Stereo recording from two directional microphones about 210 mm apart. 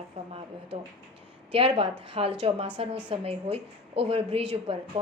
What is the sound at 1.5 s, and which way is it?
A woman's voice, 25° right (ahead or behind).